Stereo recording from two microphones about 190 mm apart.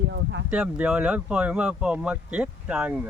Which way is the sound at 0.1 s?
65° right (ahead or behind).